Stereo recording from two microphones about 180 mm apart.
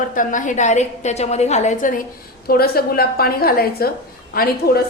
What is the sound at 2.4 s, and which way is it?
A woman's voice, 55° left (ahead or behind).